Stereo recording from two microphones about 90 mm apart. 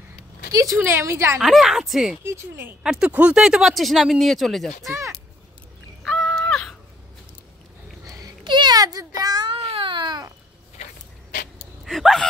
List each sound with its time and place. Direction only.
0.5 s speech: 40° right (ahead or behind)
0.7 s a woman's voice: 25° right (ahead or behind)
1.4 s speech: centre (ahead or behind)
2.2 s a woman's voice: 25° right (ahead or behind)
2.8 s speech: 10° right (ahead or behind)
6.0 s crow: 5° left (ahead or behind)
8.5 s a sound: 55° right (ahead or behind)
9.5 s baby cry: 90° right; by 10.2 s 60° right (ahead or behind)
11.8 s gasp: centre (ahead or behind)